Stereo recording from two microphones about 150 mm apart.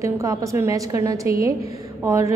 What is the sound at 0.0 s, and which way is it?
A woman's voice, 20° right (ahead or behind).